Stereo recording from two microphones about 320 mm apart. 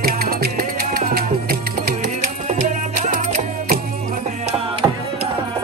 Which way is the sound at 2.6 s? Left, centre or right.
Right.